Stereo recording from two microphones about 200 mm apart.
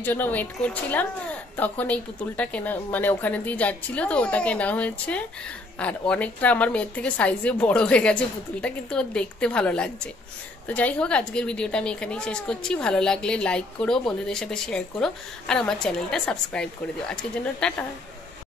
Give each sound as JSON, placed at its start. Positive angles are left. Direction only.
{"t": 0.0, "sound": "a woman's voice", "side_deg": 10}